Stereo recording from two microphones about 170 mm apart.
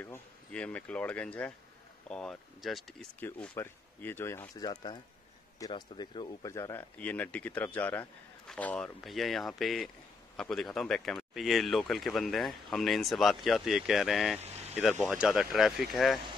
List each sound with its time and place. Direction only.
0.0 s speech: 10° left (ahead or behind)
3.2 s speech: 10° left (ahead or behind)